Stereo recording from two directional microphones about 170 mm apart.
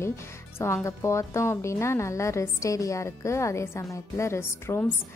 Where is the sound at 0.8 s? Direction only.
15° left (ahead or behind).